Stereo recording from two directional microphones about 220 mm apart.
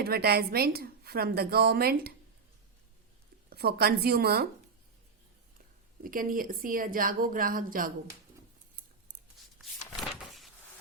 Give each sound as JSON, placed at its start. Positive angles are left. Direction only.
{"t": 0.0, "sound": "a woman's voice", "side_deg": -45}
{"t": 3.5, "sound": "a woman's voice", "side_deg": -45}
{"t": 6.0, "sound": "speech", "side_deg": -40}
{"t": 10.0, "sound": "power windows", "side_deg": 0}